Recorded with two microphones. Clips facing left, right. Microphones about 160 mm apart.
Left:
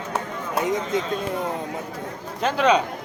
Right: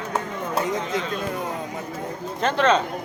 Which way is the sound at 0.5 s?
20° left (ahead or behind).